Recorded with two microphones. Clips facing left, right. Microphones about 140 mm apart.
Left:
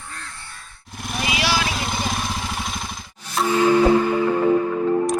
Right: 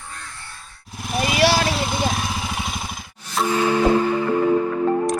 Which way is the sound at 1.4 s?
45° right (ahead or behind).